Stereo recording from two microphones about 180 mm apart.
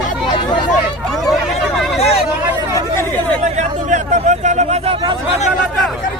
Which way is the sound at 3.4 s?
40° right (ahead or behind).